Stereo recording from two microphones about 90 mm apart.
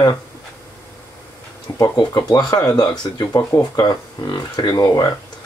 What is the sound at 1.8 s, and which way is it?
Speech, 50° left (ahead or behind).